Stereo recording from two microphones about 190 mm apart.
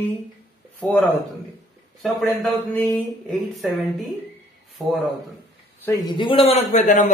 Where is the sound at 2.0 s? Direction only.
Centre (ahead or behind).